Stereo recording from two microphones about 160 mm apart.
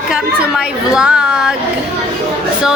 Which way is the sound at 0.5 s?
5° right (ahead or behind).